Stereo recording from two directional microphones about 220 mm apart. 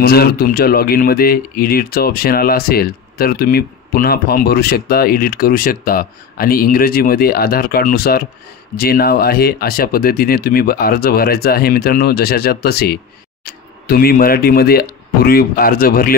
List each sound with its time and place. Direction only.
0.0 s speech: 45° left (ahead or behind)